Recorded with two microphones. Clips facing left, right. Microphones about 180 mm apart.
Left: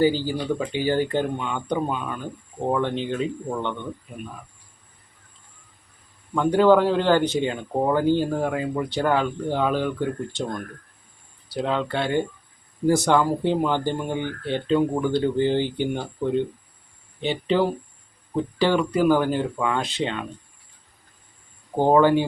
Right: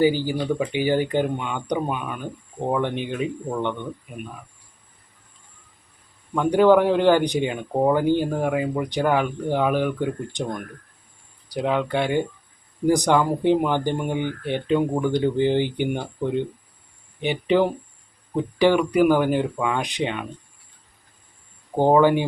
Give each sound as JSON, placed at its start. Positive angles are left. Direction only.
{"t": 0.0, "sound": "a man's voice", "side_deg": -15}
{"t": 6.3, "sound": "a man's voice", "side_deg": -15}
{"t": 21.8, "sound": "a man's voice", "side_deg": -15}